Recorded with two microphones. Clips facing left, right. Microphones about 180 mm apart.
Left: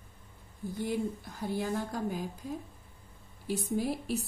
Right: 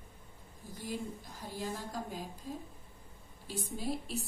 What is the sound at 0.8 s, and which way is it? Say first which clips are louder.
Speech: left 5 dB; 65° left (ahead or behind).